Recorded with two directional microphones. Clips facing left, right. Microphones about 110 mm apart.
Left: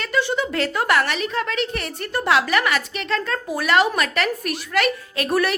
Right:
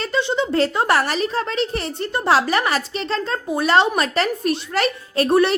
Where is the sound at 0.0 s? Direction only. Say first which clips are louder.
Right 1 dB; 25° right (ahead or behind).